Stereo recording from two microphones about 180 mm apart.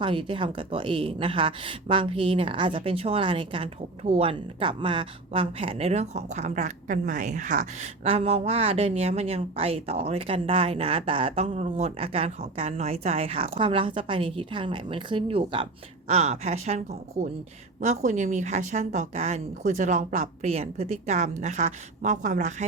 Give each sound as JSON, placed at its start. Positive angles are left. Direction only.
{"t": 0.0, "sound": "speech", "side_deg": -30}
{"t": 8.0, "sound": "speech", "side_deg": -35}